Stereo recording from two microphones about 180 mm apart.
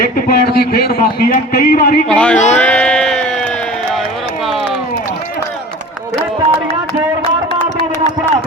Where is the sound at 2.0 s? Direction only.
5° left (ahead or behind).